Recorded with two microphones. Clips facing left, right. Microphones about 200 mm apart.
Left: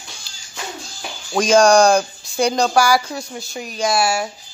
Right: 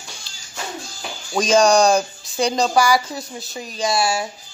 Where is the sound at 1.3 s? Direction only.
Centre (ahead or behind).